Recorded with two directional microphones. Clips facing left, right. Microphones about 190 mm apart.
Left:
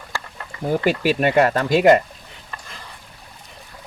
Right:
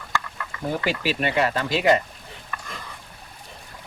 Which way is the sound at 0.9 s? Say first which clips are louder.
Left 7 dB; 45° left (ahead or behind).